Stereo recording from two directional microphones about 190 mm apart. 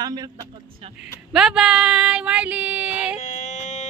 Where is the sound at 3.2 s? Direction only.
35° left (ahead or behind).